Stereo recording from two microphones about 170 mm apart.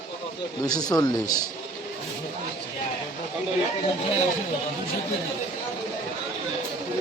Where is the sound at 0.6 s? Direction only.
25° left (ahead or behind).